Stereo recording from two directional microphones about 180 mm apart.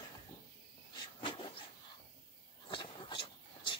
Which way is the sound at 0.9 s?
30° left (ahead or behind).